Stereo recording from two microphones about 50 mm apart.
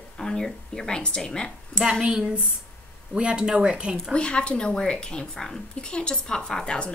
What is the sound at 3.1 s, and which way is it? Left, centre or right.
Speech, right.